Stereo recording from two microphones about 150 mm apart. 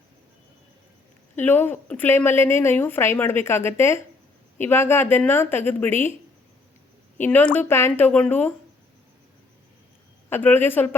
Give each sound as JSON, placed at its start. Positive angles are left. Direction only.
{"t": 1.4, "sound": "a woman's voice", "side_deg": 15}
{"t": 7.2, "sound": "a woman's voice", "side_deg": 10}
{"t": 10.2, "sound": "a woman's voice", "side_deg": 15}